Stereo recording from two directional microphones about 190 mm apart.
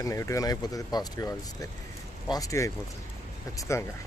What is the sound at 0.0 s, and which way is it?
Speech, 15° left (ahead or behind).